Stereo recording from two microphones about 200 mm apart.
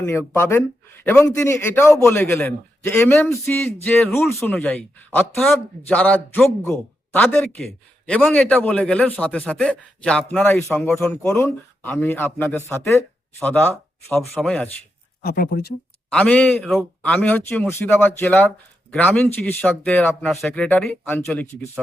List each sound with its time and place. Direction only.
0.0 s speech: 10° left (ahead or behind)
15.2 s speech: 50° left (ahead or behind)
16.1 s speech: 5° left (ahead or behind)